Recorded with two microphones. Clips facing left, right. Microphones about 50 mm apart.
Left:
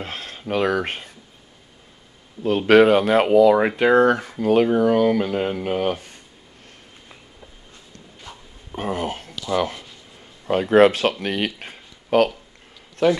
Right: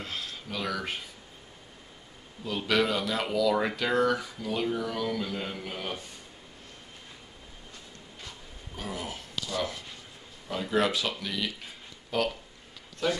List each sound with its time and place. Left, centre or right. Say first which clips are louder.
0.0 s speech: left 6 dB; left
2.4 s speech: left 13 dB; left
8.3 s a sound: left 6 dB; left
9.5 s speech: left 11 dB; left